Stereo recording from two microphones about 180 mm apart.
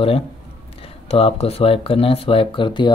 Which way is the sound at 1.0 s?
35° left (ahead or behind).